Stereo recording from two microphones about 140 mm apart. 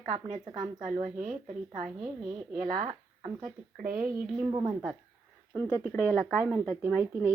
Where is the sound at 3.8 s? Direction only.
80° right.